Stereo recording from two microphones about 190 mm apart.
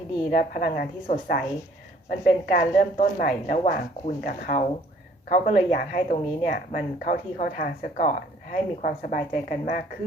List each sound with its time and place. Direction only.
0.3 s a woman's voice: 50° left (ahead or behind)